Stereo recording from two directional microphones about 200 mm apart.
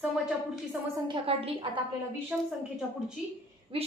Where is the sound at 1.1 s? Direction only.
30° right (ahead or behind).